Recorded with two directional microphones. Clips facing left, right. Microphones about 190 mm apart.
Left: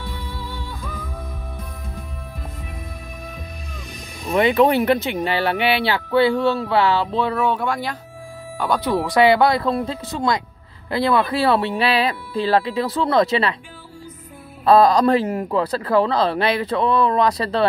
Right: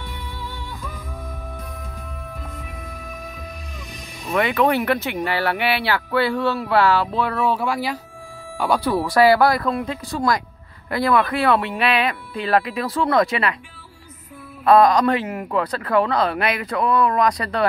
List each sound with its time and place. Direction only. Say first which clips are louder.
4.3 s speech: left 3 dB; 30° left (ahead or behind)
7.3 s speech: even; 5° right (ahead or behind)
8.9 s speech: left 1 dB; 20° left (ahead or behind)
14.6 s speech: left 1 dB; 30° left (ahead or behind)